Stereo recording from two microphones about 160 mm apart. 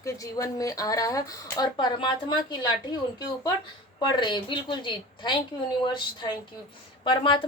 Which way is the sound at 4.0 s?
30° left (ahead or behind).